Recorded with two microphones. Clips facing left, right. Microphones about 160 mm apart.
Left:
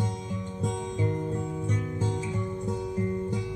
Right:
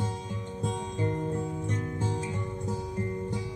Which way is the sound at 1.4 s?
25° right (ahead or behind).